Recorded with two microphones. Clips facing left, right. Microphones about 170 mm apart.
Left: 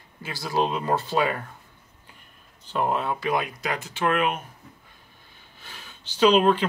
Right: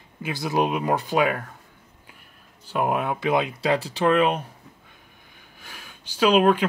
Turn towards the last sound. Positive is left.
turn(degrees=-10)  # may be behind; listen again after turning